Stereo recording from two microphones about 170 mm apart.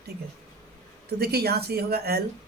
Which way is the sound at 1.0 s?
70° right (ahead or behind).